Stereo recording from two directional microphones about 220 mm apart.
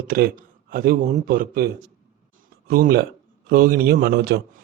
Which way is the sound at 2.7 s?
40° right (ahead or behind).